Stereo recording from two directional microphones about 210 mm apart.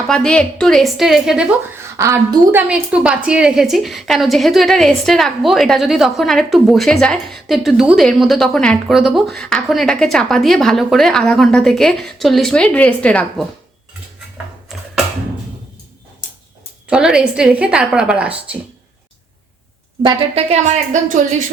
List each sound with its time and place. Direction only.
0.1 s a woman's voice: 5° left (ahead or behind)
16.9 s a woman's voice: 5° right (ahead or behind)
20.0 s a woman's voice: 25° right (ahead or behind)